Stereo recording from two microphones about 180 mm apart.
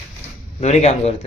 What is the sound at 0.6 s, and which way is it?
Speech, 35° left (ahead or behind).